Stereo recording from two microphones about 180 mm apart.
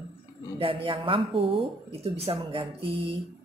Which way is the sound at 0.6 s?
30° right (ahead or behind).